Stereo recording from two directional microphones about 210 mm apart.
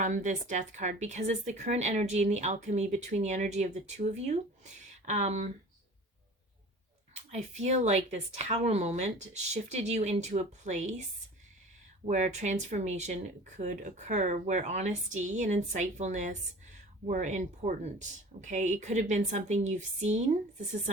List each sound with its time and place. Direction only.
0.0 s speech: 35° right (ahead or behind)
7.3 s speech: 35° right (ahead or behind)
12.0 s speech: 35° right (ahead or behind)